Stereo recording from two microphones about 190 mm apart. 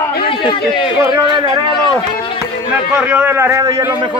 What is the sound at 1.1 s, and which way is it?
Speech, 20° right (ahead or behind).